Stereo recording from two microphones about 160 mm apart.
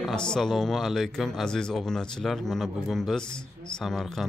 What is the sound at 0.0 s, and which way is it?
Speech, 5° left (ahead or behind).